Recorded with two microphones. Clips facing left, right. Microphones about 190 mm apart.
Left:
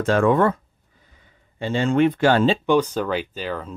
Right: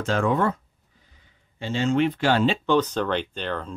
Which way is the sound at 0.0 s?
55° left (ahead or behind).